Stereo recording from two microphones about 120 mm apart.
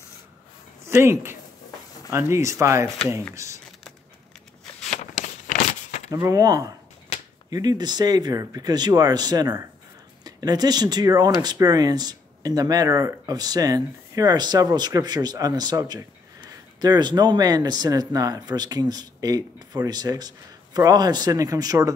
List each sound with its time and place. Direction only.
0.8 s speech: 20° right (ahead or behind)
4.8 s a sound: 75° left (ahead or behind)
6.0 s speech: 30° right (ahead or behind)